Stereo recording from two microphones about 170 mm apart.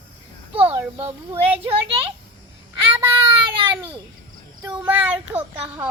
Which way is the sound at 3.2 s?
30° right (ahead or behind).